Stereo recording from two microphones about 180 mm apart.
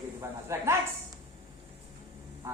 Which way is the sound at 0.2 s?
15° right (ahead or behind).